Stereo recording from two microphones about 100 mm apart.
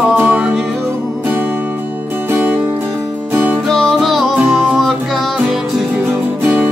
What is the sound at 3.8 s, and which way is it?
Music, centre (ahead or behind).